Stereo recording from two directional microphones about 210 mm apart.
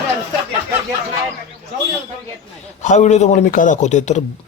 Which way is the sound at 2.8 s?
35° left (ahead or behind).